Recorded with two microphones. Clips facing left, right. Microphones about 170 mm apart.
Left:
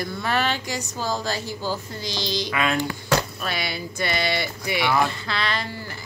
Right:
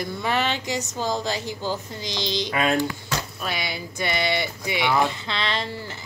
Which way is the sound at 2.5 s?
40° right (ahead or behind).